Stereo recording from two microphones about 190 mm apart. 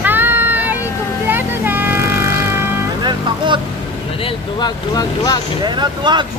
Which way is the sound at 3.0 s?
25° right (ahead or behind).